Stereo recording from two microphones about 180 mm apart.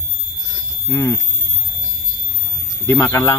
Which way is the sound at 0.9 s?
20° left (ahead or behind).